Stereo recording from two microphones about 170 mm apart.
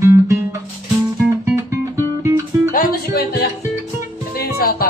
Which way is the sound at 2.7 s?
55° left (ahead or behind).